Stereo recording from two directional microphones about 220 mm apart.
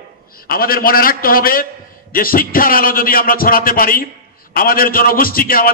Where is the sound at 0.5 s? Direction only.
40° left (ahead or behind).